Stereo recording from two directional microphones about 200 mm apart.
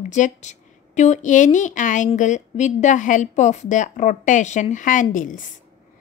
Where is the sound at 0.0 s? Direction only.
35° left (ahead or behind).